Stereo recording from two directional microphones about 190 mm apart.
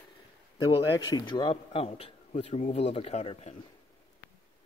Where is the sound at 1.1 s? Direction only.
20° left (ahead or behind).